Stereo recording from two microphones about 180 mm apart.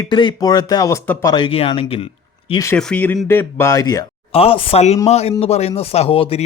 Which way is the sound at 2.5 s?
15° left (ahead or behind).